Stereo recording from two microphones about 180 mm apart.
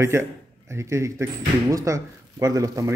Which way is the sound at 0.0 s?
15° right (ahead or behind).